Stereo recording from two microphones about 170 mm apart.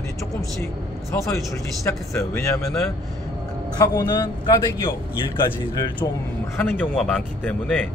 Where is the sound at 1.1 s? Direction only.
20° left (ahead or behind).